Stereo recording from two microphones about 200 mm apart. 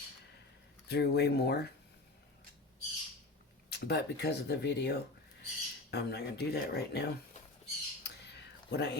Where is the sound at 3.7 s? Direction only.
55° left (ahead or behind).